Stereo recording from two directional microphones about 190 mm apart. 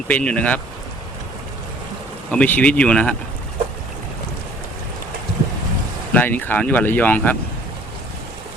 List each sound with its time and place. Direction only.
0.1 s speech: 5° left (ahead or behind)
2.3 s speech: 5° left (ahead or behind)
6.1 s speech: 10° left (ahead or behind)